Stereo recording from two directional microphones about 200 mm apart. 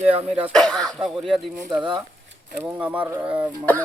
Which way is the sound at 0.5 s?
5° left (ahead or behind).